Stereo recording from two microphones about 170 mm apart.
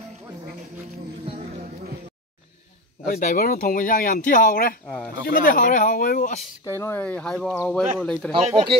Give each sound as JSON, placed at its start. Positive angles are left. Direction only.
{"t": 3.1, "sound": "speech", "side_deg": 60}
{"t": 4.8, "sound": "speech", "side_deg": 5}
{"t": 5.2, "sound": "speech", "side_deg": 55}
{"t": 6.6, "sound": "speech", "side_deg": 15}
{"t": 8.3, "sound": "speech", "side_deg": -35}